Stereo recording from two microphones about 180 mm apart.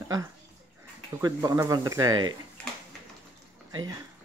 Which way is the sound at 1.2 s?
15° right (ahead or behind).